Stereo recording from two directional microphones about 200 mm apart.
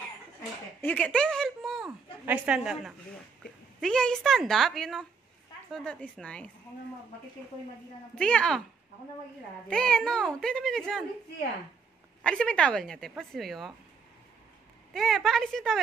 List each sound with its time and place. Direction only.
0.7 s a woman's voice: 5° left (ahead or behind)
8.2 s speech: 5° left (ahead or behind)
9.7 s speech: 5° left (ahead or behind)
12.2 s speech: 5° left (ahead or behind)
15.0 s speech: centre (ahead or behind)